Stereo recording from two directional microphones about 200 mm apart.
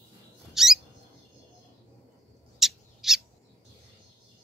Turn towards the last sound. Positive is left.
turn(degrees=0)  # may be behind; listen again after turning